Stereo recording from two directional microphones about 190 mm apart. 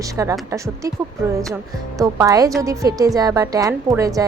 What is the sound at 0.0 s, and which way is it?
Speech, 15° right (ahead or behind).